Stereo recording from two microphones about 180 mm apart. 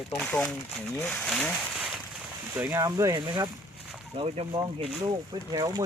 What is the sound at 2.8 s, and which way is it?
Speech, 20° right (ahead or behind).